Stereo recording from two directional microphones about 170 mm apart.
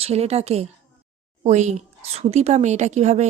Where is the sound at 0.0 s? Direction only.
35° right (ahead or behind).